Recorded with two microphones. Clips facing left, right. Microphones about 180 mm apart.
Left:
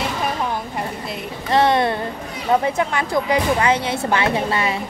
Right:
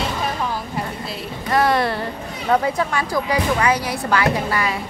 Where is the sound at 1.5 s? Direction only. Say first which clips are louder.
Left 2 dB; 25° left (ahead or behind).